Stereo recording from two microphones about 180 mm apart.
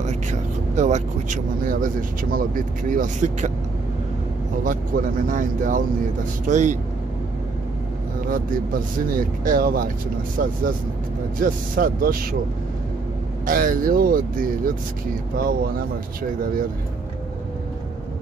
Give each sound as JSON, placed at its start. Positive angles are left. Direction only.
{"t": 0.0, "sound": "speech", "side_deg": -40}
{"t": 4.6, "sound": "speech", "side_deg": -50}
{"t": 8.3, "sound": "speech", "side_deg": -50}
{"t": 13.5, "sound": "speech", "side_deg": -50}